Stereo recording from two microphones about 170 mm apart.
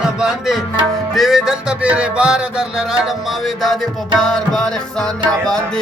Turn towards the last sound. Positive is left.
turn(degrees=5)  # may be behind; listen again after turning